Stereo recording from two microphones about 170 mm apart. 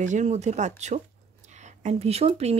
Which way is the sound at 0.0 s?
45° right (ahead or behind).